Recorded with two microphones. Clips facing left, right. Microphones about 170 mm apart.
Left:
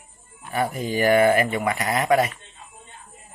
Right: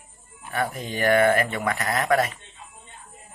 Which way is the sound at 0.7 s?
5° left (ahead or behind).